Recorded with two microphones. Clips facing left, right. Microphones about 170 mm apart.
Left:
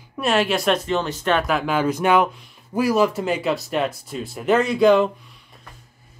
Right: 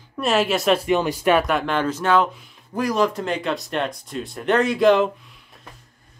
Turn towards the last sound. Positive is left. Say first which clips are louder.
# left 1 dB
turn(degrees=0)  # may be behind; listen again after turning